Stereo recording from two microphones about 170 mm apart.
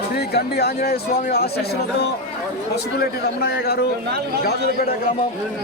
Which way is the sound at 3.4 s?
65° left (ahead or behind).